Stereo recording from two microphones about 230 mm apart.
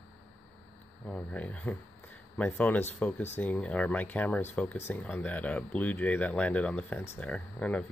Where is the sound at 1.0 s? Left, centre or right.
Centre.